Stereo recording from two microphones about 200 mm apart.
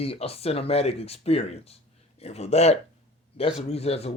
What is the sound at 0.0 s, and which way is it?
A man's voice, 30° left (ahead or behind).